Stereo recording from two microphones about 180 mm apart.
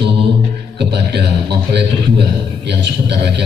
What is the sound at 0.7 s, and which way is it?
Speech, 65° right (ahead or behind).